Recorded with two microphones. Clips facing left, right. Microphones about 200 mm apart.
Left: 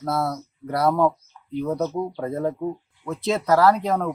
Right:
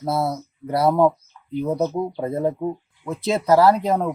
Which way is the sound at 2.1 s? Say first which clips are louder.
Right 3 dB; 20° right (ahead or behind).